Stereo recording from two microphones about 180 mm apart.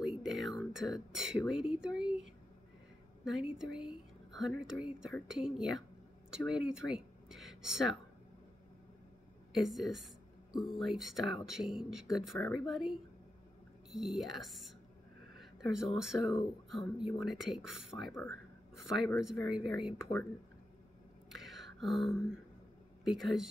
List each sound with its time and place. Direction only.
0.0 s a sound: 5° right (ahead or behind)
0.4 s speech: centre (ahead or behind)
1.6 s a sound: 5° right (ahead or behind)
3.3 s speech: 5° right (ahead or behind)
9.5 s speech: centre (ahead or behind)
18.1 s speech: 15° left (ahead or behind)
18.9 s speech: centre (ahead or behind)
21.3 s a sound: centre (ahead or behind)
23.0 s speech: centre (ahead or behind)